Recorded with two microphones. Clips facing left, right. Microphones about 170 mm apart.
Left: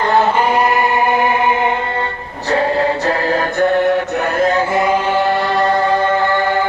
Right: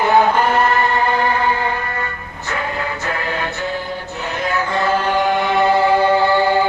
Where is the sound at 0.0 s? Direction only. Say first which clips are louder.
Even; centre (ahead or behind); by 4.5 s 50° left (ahead or behind).